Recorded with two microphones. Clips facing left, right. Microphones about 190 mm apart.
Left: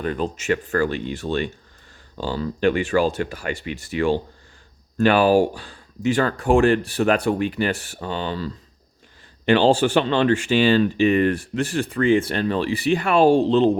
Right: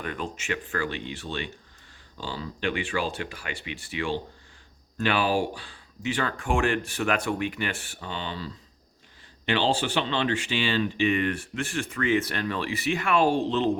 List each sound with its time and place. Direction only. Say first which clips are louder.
0.0 s speech: left 9 dB; 35° left (ahead or behind)